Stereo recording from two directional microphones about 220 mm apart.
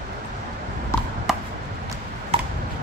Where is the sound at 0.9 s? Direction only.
10° left (ahead or behind).